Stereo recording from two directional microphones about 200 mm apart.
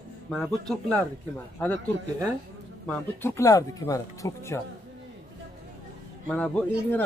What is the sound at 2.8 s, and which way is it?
A man's voice, 10° left (ahead or behind).